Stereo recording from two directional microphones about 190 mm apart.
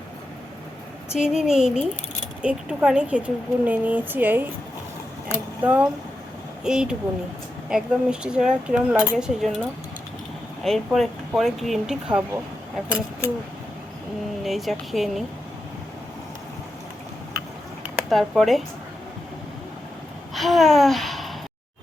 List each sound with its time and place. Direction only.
1.1 s speech: 5° right (ahead or behind)
5.3 s a sound: 10° right (ahead or behind)
6.7 s speech: 5° right (ahead or behind)
14.4 s speech: centre (ahead or behind)
18.1 s speech: centre (ahead or behind)
20.3 s a sound: centre (ahead or behind)